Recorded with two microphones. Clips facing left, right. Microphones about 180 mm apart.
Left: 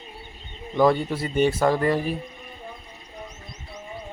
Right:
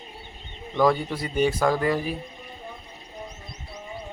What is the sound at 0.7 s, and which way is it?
Speech, 5° left (ahead or behind).